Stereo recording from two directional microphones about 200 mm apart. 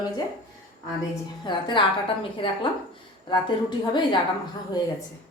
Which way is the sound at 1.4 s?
25° left (ahead or behind).